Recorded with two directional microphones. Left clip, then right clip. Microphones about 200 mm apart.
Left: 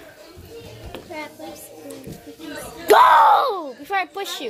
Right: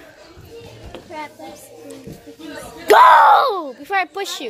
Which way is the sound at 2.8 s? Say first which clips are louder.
Right 3 dB; 15° right (ahead or behind).